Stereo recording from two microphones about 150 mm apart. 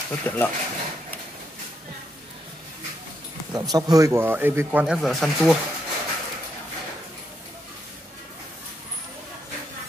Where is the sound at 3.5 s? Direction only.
25° right (ahead or behind); by 5.5 s centre (ahead or behind).